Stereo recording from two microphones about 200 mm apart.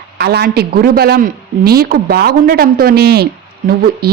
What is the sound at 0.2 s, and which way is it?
A woman's voice, 50° right (ahead or behind).